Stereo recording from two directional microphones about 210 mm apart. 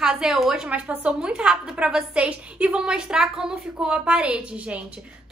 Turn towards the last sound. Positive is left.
turn(degrees=-5)  # may be behind; listen again after turning